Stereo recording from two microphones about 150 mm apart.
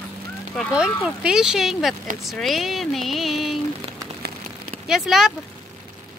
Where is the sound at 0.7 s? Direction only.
5° right (ahead or behind).